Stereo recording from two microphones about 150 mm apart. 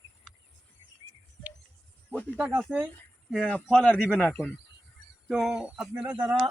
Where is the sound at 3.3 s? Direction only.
5° left (ahead or behind).